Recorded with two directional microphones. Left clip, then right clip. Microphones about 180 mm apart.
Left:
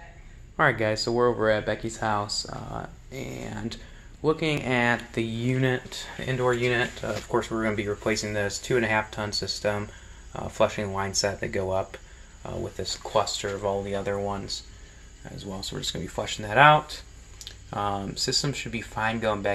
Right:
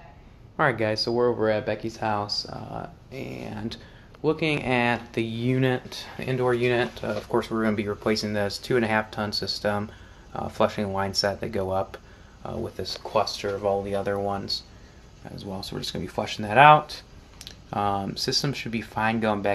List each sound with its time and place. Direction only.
0.6 s speech: 5° right (ahead or behind); by 19.5 s 30° right (ahead or behind)